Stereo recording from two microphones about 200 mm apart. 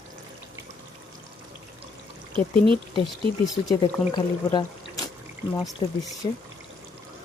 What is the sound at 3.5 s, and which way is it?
Speech, 15° left (ahead or behind).